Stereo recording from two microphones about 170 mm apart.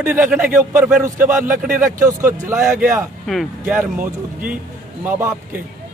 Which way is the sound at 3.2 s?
Centre (ahead or behind).